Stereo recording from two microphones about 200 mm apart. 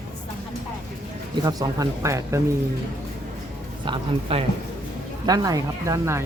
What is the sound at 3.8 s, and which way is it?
Speech, 25° right (ahead or behind).